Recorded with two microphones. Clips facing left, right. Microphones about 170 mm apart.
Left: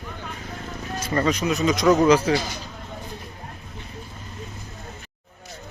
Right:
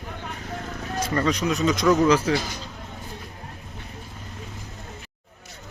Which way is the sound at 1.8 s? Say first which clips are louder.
Left 3 dB; 20° left (ahead or behind).